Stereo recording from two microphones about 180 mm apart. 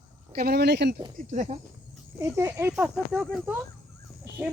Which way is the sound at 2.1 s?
15° right (ahead or behind).